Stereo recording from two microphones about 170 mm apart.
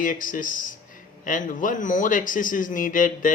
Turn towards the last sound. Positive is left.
turn(degrees=50)  # may be behind; listen again after turning